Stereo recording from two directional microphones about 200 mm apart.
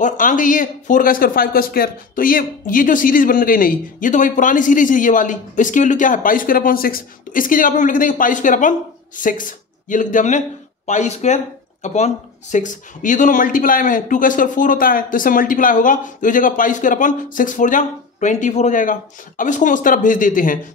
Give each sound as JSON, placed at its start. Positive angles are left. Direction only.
{"t": 0.0, "sound": "a man's voice", "side_deg": 40}